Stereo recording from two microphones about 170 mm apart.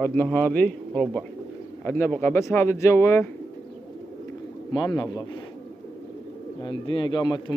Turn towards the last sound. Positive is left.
turn(degrees=25)  # may be behind; listen again after turning